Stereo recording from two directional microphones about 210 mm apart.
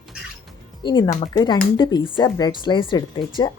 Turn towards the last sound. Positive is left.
turn(degrees=20)  # may be behind; listen again after turning